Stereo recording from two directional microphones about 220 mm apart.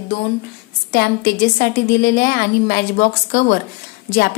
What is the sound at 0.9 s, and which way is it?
A woman's voice, 45° left (ahead or behind).